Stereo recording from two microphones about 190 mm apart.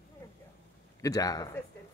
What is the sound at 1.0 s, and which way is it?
Speech, 20° left (ahead or behind).